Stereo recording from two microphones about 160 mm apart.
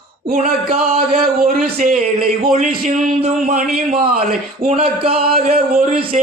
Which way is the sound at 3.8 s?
55° right (ahead or behind).